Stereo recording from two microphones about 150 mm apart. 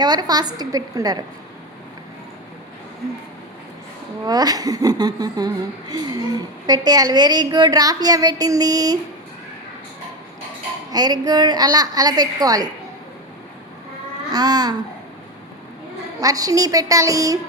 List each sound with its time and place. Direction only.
0.0 s a woman's voice: 30° right (ahead or behind)
4.3 s a woman's voice: 25° right (ahead or behind)
10.9 s a woman's voice: 25° right (ahead or behind)
14.3 s a woman's voice: 25° right (ahead or behind)
16.2 s a woman's voice: 25° right (ahead or behind)